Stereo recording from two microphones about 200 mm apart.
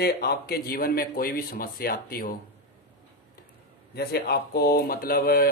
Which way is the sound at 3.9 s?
55° left (ahead or behind).